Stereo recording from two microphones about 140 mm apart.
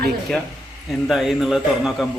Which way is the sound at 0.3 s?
Centre (ahead or behind).